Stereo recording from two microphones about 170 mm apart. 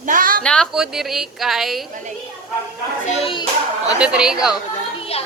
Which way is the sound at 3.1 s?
35° left (ahead or behind).